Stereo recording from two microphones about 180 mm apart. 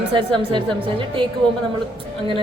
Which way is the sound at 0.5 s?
25° right (ahead or behind).